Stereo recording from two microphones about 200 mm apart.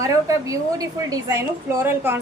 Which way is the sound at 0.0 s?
15° right (ahead or behind).